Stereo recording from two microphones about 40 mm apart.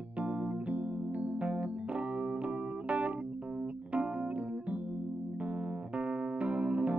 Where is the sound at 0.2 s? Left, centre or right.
Right.